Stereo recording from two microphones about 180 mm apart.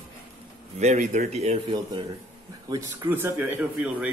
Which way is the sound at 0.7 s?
40° right (ahead or behind).